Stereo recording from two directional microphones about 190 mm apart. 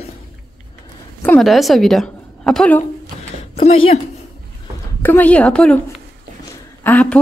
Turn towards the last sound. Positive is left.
turn(degrees=10)  # may be behind; listen again after turning